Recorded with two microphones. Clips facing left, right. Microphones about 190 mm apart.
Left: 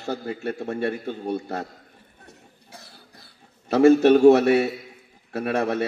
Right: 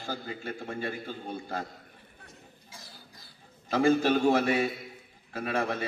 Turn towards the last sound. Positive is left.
turn(degrees=70)  # may be behind; listen again after turning